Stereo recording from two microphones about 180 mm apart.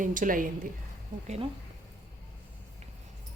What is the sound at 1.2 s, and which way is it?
Speech, 35° right (ahead or behind).